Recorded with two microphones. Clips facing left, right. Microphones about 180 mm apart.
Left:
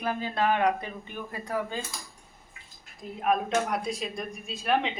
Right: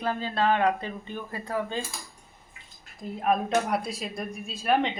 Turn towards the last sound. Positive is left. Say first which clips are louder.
# right 2 dB
turn(degrees=0)  # may be behind; listen again after turning